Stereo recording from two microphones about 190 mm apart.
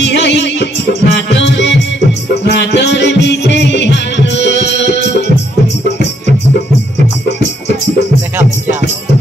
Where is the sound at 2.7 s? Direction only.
65° left (ahead or behind).